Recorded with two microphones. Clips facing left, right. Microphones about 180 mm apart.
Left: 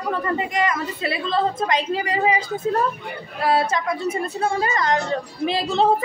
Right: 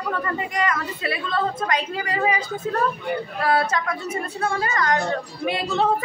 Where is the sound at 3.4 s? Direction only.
25° left (ahead or behind).